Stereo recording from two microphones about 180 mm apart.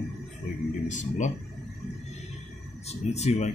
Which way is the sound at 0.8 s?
40° left (ahead or behind).